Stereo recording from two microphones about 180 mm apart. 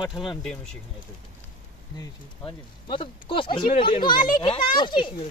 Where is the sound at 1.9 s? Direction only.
25° left (ahead or behind).